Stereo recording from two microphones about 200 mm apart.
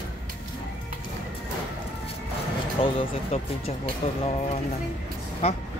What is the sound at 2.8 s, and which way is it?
Speech, 30° left (ahead or behind).